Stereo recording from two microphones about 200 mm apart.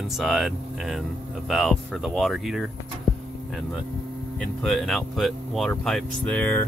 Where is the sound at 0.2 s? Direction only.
Centre (ahead or behind).